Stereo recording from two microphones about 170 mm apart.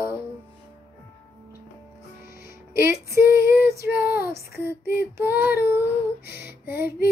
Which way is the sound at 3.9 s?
60° left (ahead or behind).